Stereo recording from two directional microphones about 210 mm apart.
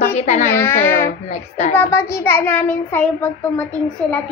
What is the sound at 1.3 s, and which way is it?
Speech, 35° left (ahead or behind).